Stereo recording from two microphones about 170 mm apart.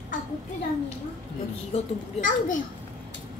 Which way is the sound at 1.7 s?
50° left (ahead or behind).